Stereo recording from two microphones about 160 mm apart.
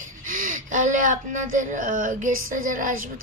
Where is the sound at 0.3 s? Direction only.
55° right (ahead or behind).